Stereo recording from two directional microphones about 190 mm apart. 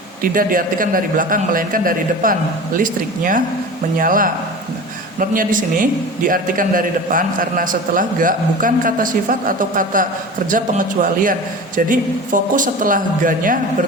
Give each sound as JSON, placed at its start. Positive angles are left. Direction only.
{"t": 0.2, "sound": "a man's voice", "side_deg": -45}